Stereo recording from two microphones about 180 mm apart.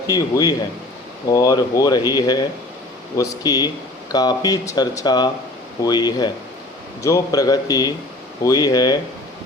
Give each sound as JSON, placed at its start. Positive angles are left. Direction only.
{"t": 0.1, "sound": "speech", "side_deg": 20}